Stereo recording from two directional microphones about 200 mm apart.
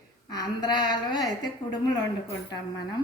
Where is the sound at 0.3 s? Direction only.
20° left (ahead or behind).